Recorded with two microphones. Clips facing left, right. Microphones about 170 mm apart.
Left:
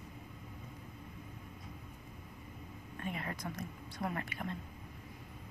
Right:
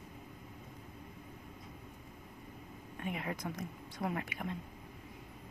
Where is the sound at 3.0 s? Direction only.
15° right (ahead or behind).